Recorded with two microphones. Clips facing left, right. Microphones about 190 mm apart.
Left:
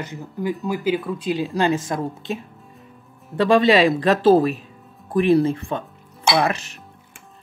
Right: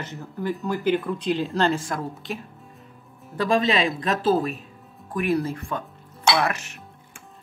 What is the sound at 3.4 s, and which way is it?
A woman's voice, 35° left (ahead or behind).